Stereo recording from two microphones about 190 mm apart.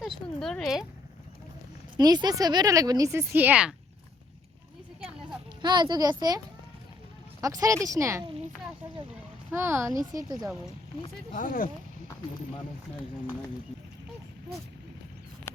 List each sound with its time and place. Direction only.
0.0 s speech: 5° left (ahead or behind)
2.0 s speech: 20° right (ahead or behind); by 3.8 s 5° right (ahead or behind)
5.6 s speech: 25° right (ahead or behind)
7.4 s speech: 20° right (ahead or behind)
9.5 s speech: 10° right (ahead or behind)
11.3 s speech: 45° left (ahead or behind)
15.5 s a sound: 15° left (ahead or behind)